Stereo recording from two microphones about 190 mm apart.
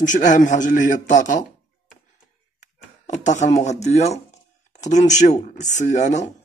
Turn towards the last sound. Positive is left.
turn(degrees=40)  # may be behind; listen again after turning